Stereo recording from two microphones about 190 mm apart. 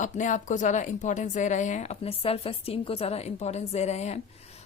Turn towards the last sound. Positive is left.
turn(degrees=35)  # may be behind; listen again after turning